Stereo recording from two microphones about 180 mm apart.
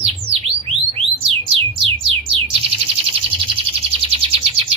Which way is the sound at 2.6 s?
30° right (ahead or behind).